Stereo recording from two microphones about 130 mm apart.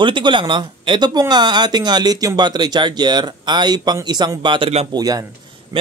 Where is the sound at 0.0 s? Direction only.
40° right (ahead or behind).